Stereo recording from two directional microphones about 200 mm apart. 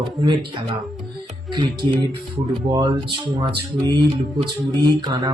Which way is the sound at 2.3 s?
20° right (ahead or behind).